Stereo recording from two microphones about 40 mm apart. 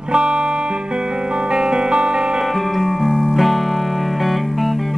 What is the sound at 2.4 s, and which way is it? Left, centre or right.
Music, centre.